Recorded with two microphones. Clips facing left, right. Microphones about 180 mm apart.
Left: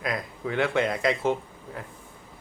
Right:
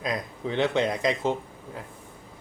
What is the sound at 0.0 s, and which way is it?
Speech, 20° right (ahead or behind).